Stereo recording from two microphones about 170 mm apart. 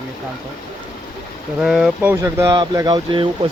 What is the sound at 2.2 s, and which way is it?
Speech, 20° right (ahead or behind).